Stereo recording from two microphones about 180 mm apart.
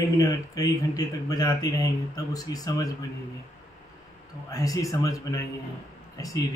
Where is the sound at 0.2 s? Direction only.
20° left (ahead or behind).